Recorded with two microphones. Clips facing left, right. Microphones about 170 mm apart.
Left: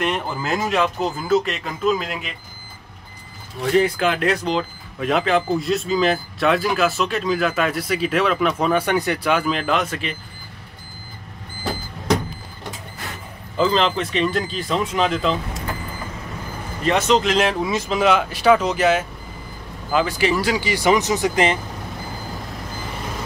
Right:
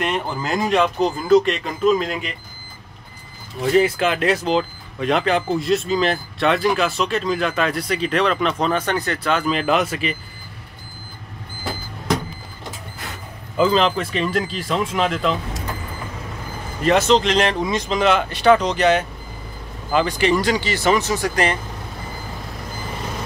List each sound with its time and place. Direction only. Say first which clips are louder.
0.0 s speech: even; centre (ahead or behind)
3.6 s speech: right 1 dB; 5° right (ahead or behind)
9.5 s speech: right 2 dB; 5° right (ahead or behind)
13.6 s speech: right 2 dB; 5° right (ahead or behind)
16.8 s speech: right 2 dB; centre (ahead or behind); by 21.5 s 20° left (ahead or behind)